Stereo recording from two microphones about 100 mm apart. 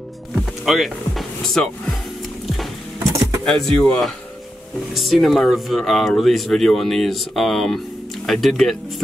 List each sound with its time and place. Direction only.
0.3 s music: centre (ahead or behind)
3.2 s speech: 5° left (ahead or behind)